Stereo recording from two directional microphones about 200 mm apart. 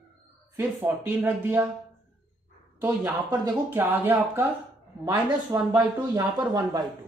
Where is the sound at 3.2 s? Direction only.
10° right (ahead or behind).